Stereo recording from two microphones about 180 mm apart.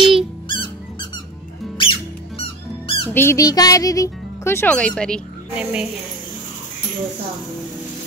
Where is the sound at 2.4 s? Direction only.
30° left (ahead or behind).